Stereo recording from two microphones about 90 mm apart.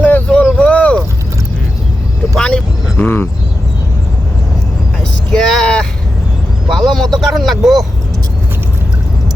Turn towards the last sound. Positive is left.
turn(degrees=0)  # may be behind; listen again after turning